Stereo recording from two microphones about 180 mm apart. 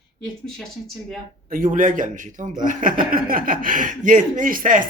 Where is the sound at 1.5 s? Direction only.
50° right (ahead or behind).